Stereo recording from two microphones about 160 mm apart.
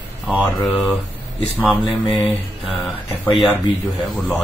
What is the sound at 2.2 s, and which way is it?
Speech, 5° left (ahead or behind).